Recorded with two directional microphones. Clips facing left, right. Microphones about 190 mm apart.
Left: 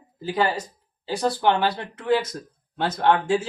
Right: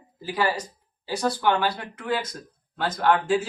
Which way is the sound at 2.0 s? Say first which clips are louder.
Left 6 dB; 25° left (ahead or behind).